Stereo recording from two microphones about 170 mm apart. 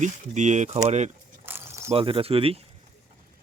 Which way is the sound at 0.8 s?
40° right (ahead or behind).